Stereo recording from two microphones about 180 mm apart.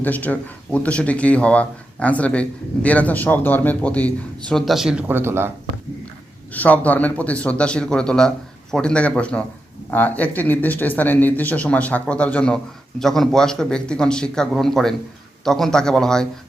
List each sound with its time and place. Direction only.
0.0 s speech: 10° left (ahead or behind); by 5.5 s 15° right (ahead or behind)
6.5 s speech: 10° left (ahead or behind)